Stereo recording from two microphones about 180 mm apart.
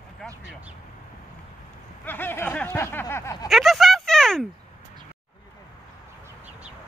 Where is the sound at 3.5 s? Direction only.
Centre (ahead or behind).